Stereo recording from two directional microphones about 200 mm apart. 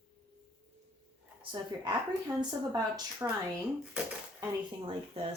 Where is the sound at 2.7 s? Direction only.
15° right (ahead or behind).